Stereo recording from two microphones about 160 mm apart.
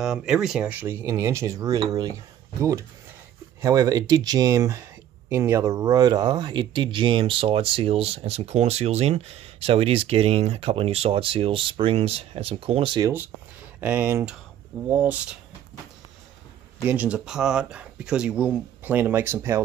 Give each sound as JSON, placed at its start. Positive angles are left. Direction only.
{"t": 0.0, "sound": "speech", "side_deg": 0}
{"t": 3.6, "sound": "speech", "side_deg": -20}
{"t": 13.7, "sound": "speech", "side_deg": -10}
{"t": 16.8, "sound": "speech", "side_deg": -10}